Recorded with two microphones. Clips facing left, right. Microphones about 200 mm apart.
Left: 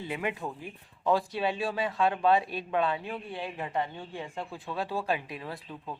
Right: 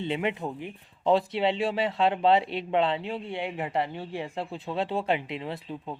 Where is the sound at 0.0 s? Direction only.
25° right (ahead or behind).